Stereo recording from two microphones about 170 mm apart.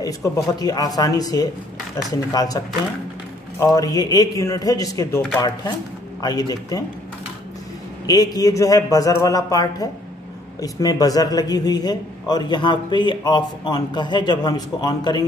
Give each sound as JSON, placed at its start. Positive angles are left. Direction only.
{"t": 0.0, "sound": "a man's voice", "side_deg": 20}
{"t": 6.2, "sound": "a man's voice", "side_deg": 20}
{"t": 8.1, "sound": "a man's voice", "side_deg": 20}